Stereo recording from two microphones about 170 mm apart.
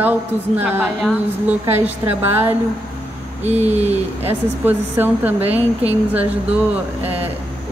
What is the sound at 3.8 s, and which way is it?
A woman's voice, 10° right (ahead or behind).